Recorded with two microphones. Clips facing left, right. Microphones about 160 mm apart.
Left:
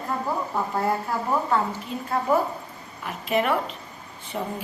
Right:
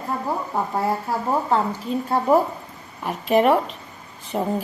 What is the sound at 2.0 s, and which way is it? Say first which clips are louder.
A woman's voice: right 4 dB; 30° right (ahead or behind).